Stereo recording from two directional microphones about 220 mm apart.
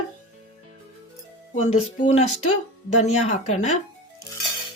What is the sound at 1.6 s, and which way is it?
Speech, 30° left (ahead or behind).